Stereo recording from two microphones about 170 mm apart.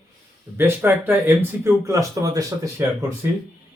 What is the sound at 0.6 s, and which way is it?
Speech, 10° right (ahead or behind).